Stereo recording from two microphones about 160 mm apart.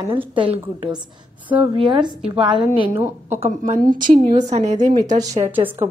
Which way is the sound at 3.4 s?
55° right (ahead or behind).